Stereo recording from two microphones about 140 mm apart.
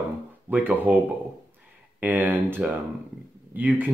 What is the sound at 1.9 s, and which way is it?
Speech, 10° right (ahead or behind).